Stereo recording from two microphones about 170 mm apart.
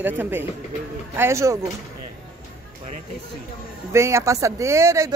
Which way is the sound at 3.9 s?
15° right (ahead or behind).